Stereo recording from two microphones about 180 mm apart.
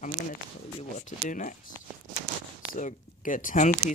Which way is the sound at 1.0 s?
45° left (ahead or behind).